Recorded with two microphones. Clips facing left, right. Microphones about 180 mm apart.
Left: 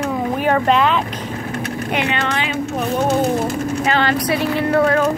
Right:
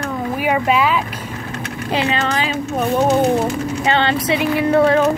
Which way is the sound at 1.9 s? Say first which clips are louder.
Right 3 dB; 30° right (ahead or behind).